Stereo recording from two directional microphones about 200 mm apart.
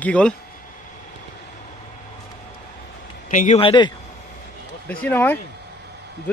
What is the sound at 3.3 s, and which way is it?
Speech, 40° left (ahead or behind).